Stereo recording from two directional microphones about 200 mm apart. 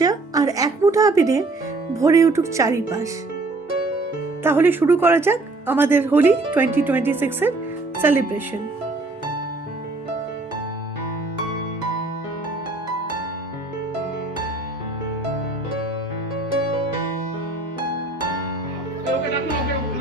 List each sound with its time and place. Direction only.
0.0 s music: 20° right (ahead or behind)
1.9 s speech: 15° right (ahead or behind)
4.4 s speech: 10° right (ahead or behind)